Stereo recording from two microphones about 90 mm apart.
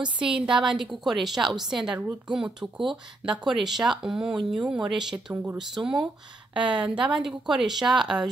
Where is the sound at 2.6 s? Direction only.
30° right (ahead or behind).